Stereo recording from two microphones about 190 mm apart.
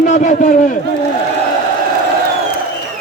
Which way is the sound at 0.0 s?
40° left (ahead or behind).